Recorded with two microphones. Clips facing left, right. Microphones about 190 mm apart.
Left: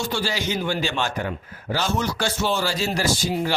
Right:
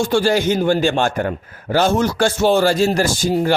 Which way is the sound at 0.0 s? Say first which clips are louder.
Right 10 dB; 50° right (ahead or behind).